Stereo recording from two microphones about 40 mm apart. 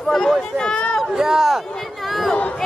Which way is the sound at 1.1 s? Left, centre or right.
Centre.